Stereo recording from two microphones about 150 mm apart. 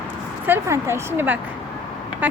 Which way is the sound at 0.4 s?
15° right (ahead or behind).